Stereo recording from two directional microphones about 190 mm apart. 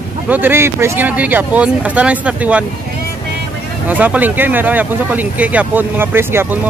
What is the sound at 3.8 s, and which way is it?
Speech, 10° right (ahead or behind).